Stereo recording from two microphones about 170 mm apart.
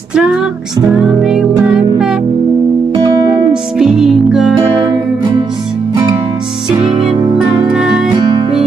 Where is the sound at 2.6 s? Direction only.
25° right (ahead or behind).